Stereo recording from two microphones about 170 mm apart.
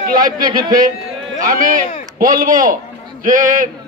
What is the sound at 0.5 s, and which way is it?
Speech, 25° right (ahead or behind).